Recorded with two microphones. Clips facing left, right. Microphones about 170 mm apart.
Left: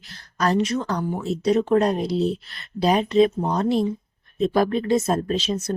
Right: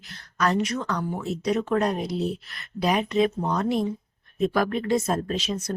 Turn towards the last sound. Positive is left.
turn(degrees=25)  # may be behind; listen again after turning